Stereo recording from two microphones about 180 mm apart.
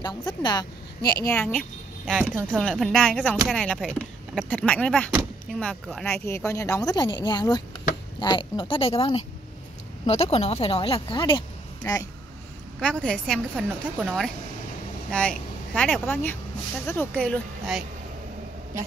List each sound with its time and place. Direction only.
0.4 s speech: 20° left (ahead or behind)
1.4 s speech: 5° left (ahead or behind)
12.8 s speech: 5° left (ahead or behind)
13.6 s speech: 10° right (ahead or behind)
15.0 s speech: 5° left (ahead or behind)